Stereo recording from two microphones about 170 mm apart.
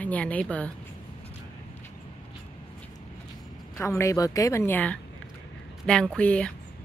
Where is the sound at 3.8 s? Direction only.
15° left (ahead or behind).